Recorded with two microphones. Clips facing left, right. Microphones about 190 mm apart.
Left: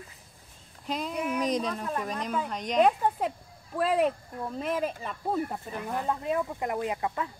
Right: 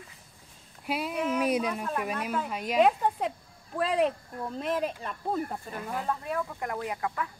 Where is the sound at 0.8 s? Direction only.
10° right (ahead or behind).